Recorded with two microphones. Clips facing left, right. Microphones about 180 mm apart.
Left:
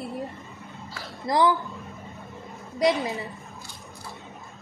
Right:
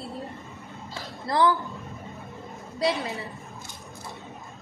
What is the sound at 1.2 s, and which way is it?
Speech, 15° left (ahead or behind).